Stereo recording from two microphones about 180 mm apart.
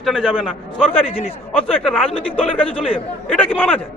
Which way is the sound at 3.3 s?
10° left (ahead or behind).